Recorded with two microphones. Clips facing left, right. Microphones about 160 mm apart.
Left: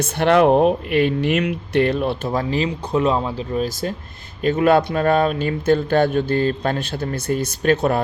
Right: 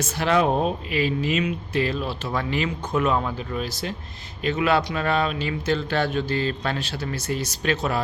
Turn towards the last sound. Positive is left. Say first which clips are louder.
# left 7 dB
turn(degrees=50)  # may be behind; listen again after turning